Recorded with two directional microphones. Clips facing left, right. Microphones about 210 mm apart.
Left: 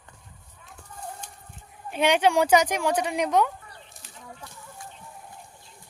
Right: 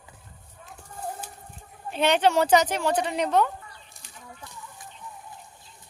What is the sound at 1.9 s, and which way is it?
Speech, 10° left (ahead or behind).